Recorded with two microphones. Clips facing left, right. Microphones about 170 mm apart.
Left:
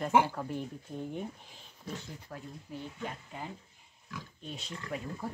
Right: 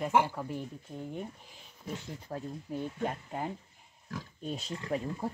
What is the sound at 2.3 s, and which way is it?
Speech, 30° right (ahead or behind).